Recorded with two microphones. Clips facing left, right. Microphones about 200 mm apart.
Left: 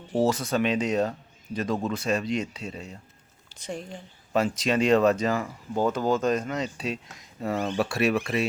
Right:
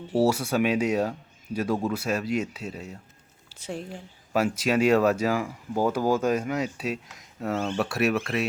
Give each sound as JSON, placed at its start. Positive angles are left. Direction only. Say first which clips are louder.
{"t": 0.1, "sound": "speech", "louder": "right 1 dB", "side_deg": -10}
{"t": 7.5, "sound": "speech", "louder": "even", "side_deg": 15}
{"t": 7.8, "sound": "speech", "louder": "left 1 dB", "side_deg": 0}